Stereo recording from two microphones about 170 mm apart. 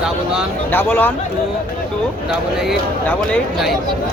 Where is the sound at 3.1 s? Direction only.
5° left (ahead or behind).